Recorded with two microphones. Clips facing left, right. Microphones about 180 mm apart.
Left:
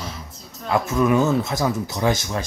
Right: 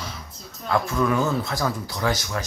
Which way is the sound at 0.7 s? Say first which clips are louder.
Left 3 dB; 20° left (ahead or behind).